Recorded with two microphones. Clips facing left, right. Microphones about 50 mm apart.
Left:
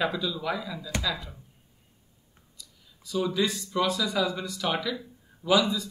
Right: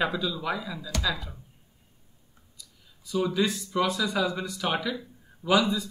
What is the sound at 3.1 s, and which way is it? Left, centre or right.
Speech, centre.